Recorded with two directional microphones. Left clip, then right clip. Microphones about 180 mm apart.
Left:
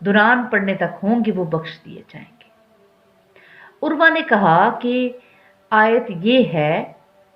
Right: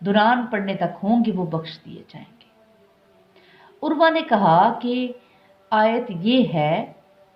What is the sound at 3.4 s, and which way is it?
A woman's voice, 30° left (ahead or behind).